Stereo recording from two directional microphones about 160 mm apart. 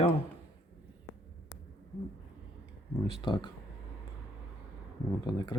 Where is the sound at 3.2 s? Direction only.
30° left (ahead or behind).